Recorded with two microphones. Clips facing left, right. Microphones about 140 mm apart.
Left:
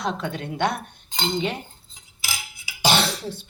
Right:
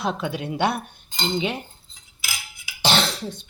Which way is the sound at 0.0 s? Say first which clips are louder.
Right 1 dB; 5° right (ahead or behind).